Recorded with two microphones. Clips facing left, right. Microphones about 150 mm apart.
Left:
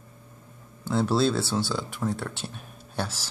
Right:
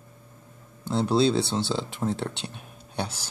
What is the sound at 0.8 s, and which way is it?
Speech, 20° right (ahead or behind).